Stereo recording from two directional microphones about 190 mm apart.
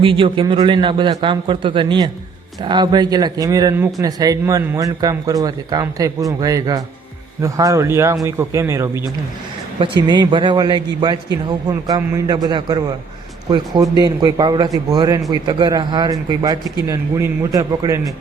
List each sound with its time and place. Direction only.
0.0 s speech: 30° right (ahead or behind)
9.8 s speech: 25° right (ahead or behind)